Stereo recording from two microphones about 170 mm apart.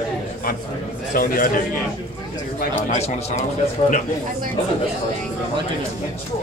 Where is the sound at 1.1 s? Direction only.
55° left (ahead or behind).